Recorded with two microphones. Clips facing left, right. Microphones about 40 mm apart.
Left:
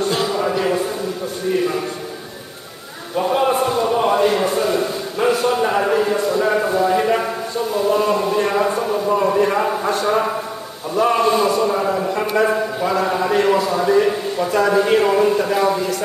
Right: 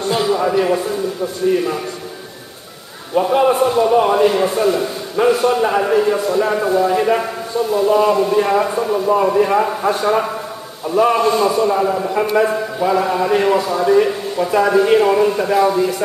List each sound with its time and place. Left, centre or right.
0.1 s a sound: centre
1.4 s a man's voice: centre
3.2 s a man's voice: centre